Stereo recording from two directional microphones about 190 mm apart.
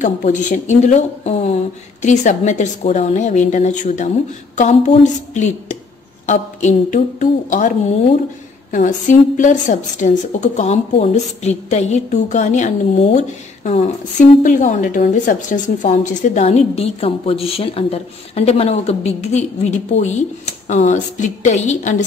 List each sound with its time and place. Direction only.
0.0 s a woman's voice: 40° left (ahead or behind)
8.7 s a woman's voice: 40° left (ahead or behind)